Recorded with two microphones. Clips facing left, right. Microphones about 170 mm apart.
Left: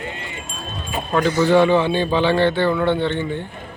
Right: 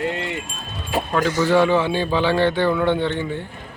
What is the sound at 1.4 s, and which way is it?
A man's voice, 5° right (ahead or behind).